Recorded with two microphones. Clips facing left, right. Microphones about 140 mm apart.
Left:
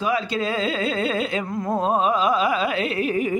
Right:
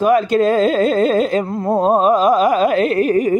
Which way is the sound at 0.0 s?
50° right (ahead or behind).